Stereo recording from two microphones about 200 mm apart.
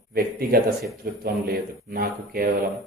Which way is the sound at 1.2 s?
45° right (ahead or behind).